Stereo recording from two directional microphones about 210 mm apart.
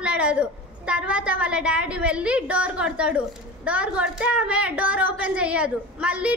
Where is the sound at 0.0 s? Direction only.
5° right (ahead or behind).